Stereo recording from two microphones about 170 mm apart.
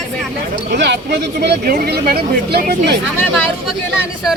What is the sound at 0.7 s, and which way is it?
Speech, 90° right.